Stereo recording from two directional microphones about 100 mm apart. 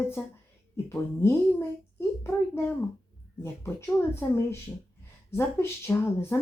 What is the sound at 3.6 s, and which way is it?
Speech, 25° left (ahead or behind).